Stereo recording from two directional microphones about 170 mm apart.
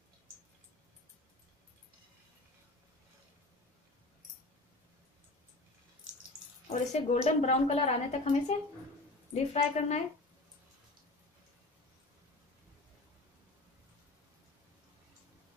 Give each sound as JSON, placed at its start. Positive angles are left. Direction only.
{"t": 6.7, "sound": "a woman's voice", "side_deg": 40}